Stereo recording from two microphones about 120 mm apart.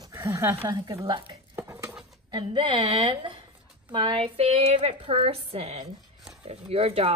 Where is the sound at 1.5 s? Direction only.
20° right (ahead or behind).